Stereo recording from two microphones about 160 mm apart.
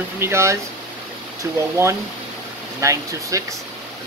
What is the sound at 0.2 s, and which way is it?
Speech, 15° right (ahead or behind).